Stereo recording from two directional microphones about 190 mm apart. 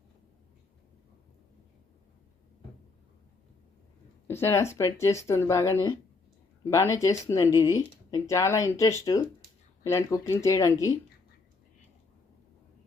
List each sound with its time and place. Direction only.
4.3 s speech: 15° left (ahead or behind)